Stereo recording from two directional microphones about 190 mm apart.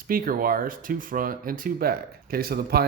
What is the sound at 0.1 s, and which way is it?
Speech, 50° right (ahead or behind).